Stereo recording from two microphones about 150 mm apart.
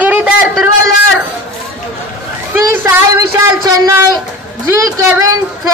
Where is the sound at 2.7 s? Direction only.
15° right (ahead or behind).